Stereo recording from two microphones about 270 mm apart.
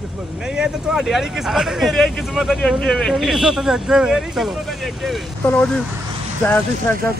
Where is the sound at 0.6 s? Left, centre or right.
Centre.